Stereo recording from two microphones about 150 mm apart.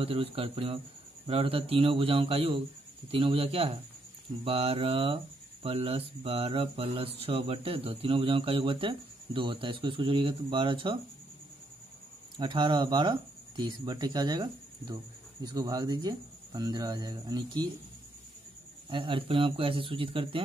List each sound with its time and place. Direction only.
0.0 s speech: 40° right (ahead or behind)
12.4 s speech: 30° right (ahead or behind)
18.9 s speech: 35° right (ahead or behind)